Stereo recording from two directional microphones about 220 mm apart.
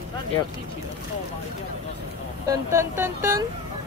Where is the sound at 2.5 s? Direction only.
15° right (ahead or behind).